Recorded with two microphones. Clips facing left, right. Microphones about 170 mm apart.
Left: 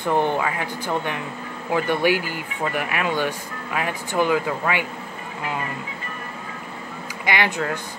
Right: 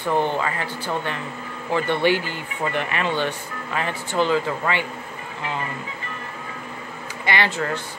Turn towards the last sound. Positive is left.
turn(degrees=15)  # may be behind; listen again after turning